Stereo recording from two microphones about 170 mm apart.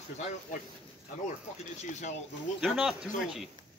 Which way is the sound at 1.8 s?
45° left (ahead or behind).